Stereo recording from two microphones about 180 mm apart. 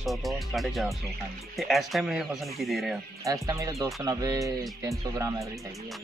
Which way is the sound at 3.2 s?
20° right (ahead or behind).